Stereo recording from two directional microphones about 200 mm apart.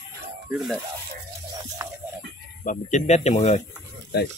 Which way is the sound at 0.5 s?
Centre (ahead or behind).